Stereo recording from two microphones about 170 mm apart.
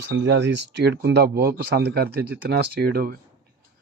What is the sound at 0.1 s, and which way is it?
Speech, 90° right.